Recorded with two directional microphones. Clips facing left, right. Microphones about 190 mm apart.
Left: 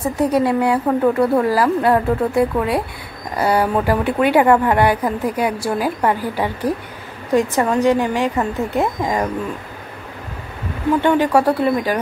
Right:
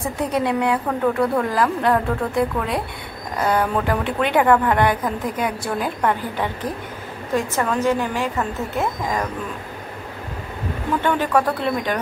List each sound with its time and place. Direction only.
0.3 s a woman's voice: 5° left (ahead or behind)
11.0 s a woman's voice: 15° left (ahead or behind)